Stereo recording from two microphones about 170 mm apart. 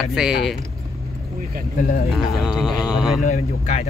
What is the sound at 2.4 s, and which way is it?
Speech, 5° right (ahead or behind).